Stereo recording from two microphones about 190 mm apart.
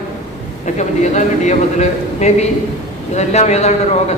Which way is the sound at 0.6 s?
35° left (ahead or behind).